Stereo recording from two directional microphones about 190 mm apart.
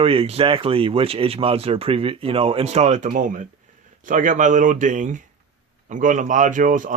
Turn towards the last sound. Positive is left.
turn(degrees=-45)  # may be behind; listen again after turning